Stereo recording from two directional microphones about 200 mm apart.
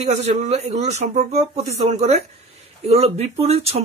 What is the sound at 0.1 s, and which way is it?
Speech, 35° right (ahead or behind).